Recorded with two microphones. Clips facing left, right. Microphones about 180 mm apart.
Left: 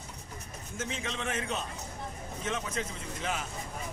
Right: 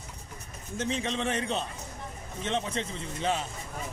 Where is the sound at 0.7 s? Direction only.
30° right (ahead or behind).